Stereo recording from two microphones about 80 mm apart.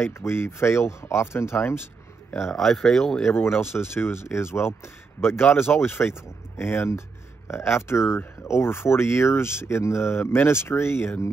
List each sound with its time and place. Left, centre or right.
0.0 s speech: left
2.4 s speech: centre
3.3 s speech: left